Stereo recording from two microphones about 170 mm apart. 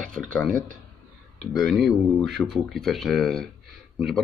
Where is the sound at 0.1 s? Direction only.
5° left (ahead or behind).